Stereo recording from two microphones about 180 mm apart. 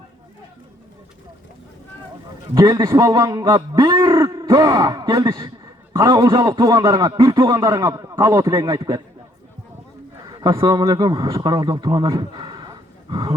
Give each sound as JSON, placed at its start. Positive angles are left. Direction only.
{"t": 2.6, "sound": "a man's voice", "side_deg": -15}
{"t": 10.2, "sound": "speech", "side_deg": -20}